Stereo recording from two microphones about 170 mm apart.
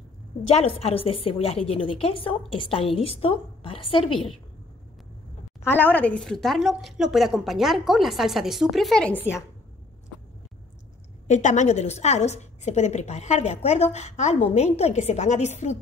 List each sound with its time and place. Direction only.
0.4 s a woman's voice: 40° left (ahead or behind)
5.6 s a woman's voice: 10° left (ahead or behind)
11.2 s a woman's voice: 45° left (ahead or behind)